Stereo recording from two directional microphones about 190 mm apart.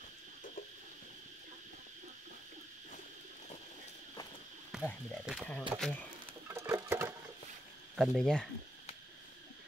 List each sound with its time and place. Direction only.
4.7 s frog: 5° right (ahead or behind)
5.1 s speech: centre (ahead or behind)
6.4 s a sound: 10° right (ahead or behind)
7.9 s speech: centre (ahead or behind)